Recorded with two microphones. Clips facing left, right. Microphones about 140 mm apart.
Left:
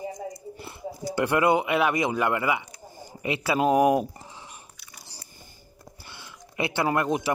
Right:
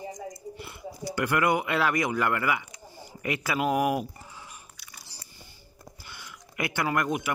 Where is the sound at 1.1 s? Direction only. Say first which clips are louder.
Left 3 dB; 25° left (ahead or behind).